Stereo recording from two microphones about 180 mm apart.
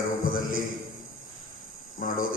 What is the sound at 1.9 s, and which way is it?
Speech, 50° left (ahead or behind).